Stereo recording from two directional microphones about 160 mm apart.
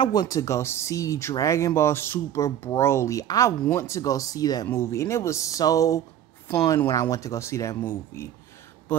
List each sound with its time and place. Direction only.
0.0 s speech: 25° left (ahead or behind)